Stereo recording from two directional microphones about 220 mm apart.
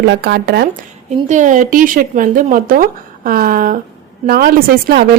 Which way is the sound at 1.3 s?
35° right (ahead or behind).